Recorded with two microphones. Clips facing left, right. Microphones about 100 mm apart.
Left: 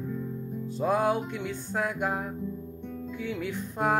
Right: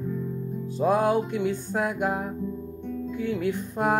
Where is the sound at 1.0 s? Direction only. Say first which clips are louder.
Right 4 dB; 5° right (ahead or behind).